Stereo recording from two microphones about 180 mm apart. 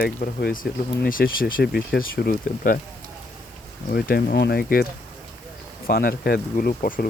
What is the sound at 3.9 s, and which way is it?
Speech, 55° left (ahead or behind).